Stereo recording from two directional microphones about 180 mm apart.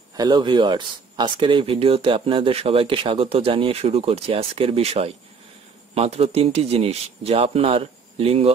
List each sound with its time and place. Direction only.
0.2 s speech: 25° right (ahead or behind)